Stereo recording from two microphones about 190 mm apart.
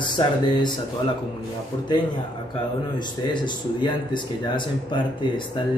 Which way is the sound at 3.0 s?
25° left (ahead or behind).